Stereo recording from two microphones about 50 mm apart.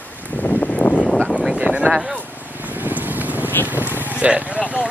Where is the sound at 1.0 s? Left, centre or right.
Left.